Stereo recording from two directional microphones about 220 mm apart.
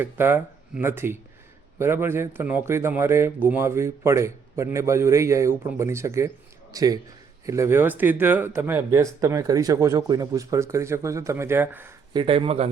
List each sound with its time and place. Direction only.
0.0 s speech: 10° right (ahead or behind)
12.1 s speech: 25° right (ahead or behind)